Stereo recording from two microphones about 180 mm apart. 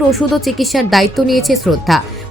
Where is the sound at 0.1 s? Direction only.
Centre (ahead or behind).